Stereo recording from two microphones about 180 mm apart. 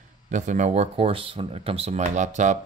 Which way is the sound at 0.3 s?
40° right (ahead or behind).